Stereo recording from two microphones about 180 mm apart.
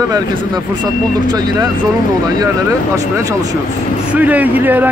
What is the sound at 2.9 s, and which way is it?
A man's voice, 15° right (ahead or behind).